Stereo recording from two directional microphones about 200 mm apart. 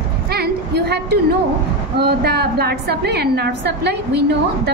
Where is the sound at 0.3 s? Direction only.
55° right (ahead or behind).